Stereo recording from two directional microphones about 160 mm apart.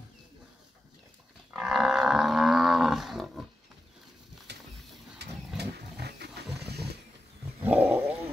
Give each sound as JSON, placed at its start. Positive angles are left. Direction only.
{"t": 1.5, "sound": "livestock", "side_deg": 0}
{"t": 5.2, "sound": "a sound", "side_deg": -90}
{"t": 5.6, "sound": "roaring cats", "side_deg": -90}
{"t": 7.6, "sound": "roaring cats", "side_deg": -10}